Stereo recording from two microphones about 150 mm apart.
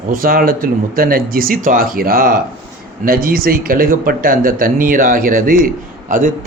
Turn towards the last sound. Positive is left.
turn(degrees=-60)  # may be behind; listen again after turning